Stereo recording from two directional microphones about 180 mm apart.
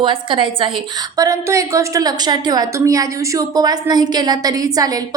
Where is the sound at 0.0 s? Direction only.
30° right (ahead or behind).